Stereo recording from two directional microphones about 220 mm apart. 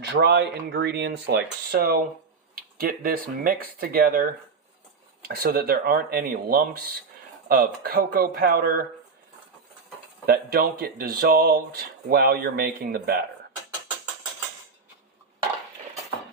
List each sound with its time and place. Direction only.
0.0 s speech: 50° right (ahead or behind)
10.2 s speech: 45° right (ahead or behind)